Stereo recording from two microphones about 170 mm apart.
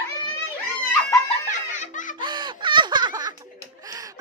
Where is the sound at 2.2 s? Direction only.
25° right (ahead or behind).